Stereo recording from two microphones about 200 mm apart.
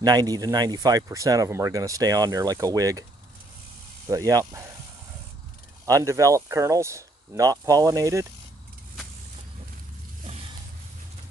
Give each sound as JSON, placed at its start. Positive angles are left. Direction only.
{"t": 0.0, "sound": "speech", "side_deg": -20}
{"t": 4.1, "sound": "speech", "side_deg": -15}
{"t": 5.9, "sound": "speech", "side_deg": -15}